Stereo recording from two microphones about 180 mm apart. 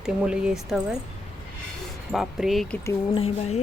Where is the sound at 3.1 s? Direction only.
35° left (ahead or behind).